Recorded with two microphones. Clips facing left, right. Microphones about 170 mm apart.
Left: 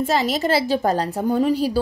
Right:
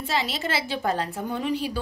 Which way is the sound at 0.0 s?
45° left (ahead or behind).